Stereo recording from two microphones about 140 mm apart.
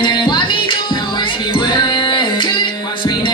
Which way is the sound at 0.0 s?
35° left (ahead or behind).